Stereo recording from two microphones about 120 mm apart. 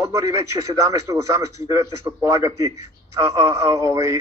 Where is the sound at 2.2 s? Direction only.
25° right (ahead or behind).